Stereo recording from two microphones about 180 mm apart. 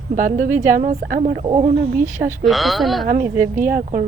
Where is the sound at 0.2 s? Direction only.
45° right (ahead or behind).